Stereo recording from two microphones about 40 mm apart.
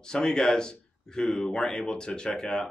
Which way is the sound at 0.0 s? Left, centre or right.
Centre.